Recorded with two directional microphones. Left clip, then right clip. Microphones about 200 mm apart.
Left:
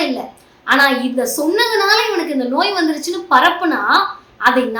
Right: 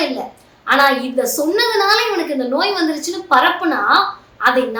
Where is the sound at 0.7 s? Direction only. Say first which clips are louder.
Even; 10° left (ahead or behind).